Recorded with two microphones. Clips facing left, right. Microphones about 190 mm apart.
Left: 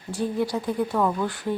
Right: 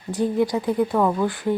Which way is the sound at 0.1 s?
15° right (ahead or behind).